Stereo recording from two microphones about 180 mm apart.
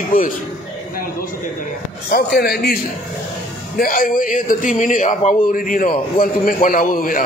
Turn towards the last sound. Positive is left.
turn(degrees=50)  # may be behind; listen again after turning